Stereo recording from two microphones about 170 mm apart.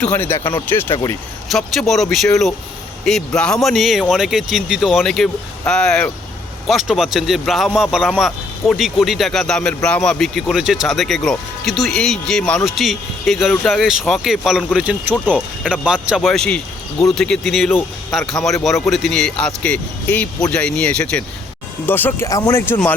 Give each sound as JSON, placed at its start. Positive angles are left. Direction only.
{"t": 0.0, "sound": "speech", "side_deg": 15}
{"t": 1.5, "sound": "speech", "side_deg": 0}